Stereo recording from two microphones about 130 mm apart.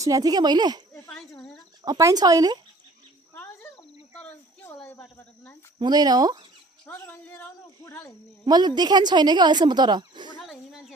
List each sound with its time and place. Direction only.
0.0 s speech: 30° right (ahead or behind)
1.0 s cricket: 5° left (ahead or behind)
1.8 s speech: 30° right (ahead or behind)
3.3 s a sound: 15° left (ahead or behind)
5.8 s speech: 30° right (ahead or behind)
6.8 s speech: 15° left (ahead or behind)
8.4 s speech: 35° right (ahead or behind)
10.3 s a sound: centre (ahead or behind)